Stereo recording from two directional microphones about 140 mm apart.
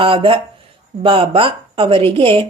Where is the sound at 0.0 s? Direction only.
40° right (ahead or behind).